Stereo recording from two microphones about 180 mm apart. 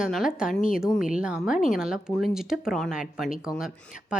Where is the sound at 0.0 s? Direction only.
Centre (ahead or behind).